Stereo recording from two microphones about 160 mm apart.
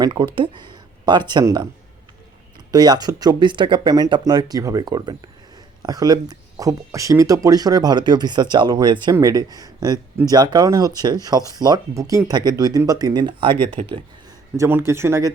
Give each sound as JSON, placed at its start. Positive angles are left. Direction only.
{"t": 0.0, "sound": "speech", "side_deg": -30}
{"t": 2.7, "sound": "speech", "side_deg": -25}
{"t": 14.5, "sound": "speech", "side_deg": -15}